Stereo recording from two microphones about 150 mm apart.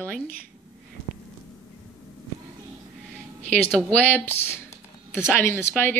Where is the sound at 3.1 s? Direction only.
5° left (ahead or behind).